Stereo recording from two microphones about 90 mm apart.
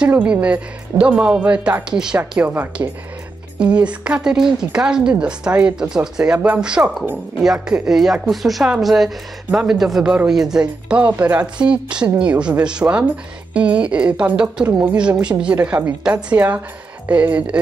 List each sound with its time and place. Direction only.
0.0 s speech: 10° right (ahead or behind)